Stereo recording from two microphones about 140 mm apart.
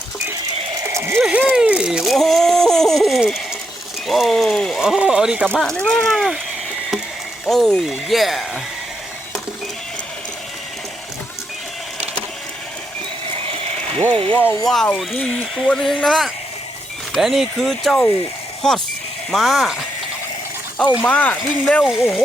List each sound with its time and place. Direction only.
0.8 s a sound: 20° right (ahead or behind); by 3.4 s centre (ahead or behind)
4.0 s speech: centre (ahead or behind)
7.4 s speech: centre (ahead or behind)
14.3 s speech: 15° left (ahead or behind)
14.7 s speech: 5° left (ahead or behind)
21.0 s speech: 10° left (ahead or behind)